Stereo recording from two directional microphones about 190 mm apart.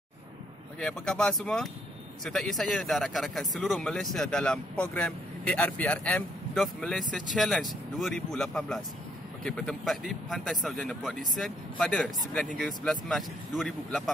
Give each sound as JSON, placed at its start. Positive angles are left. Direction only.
{"t": 0.7, "sound": "speech", "side_deg": 5}